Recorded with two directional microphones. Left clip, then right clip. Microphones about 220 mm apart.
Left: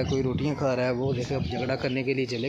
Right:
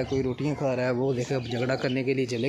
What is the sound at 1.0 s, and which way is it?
Speech, 15° right (ahead or behind).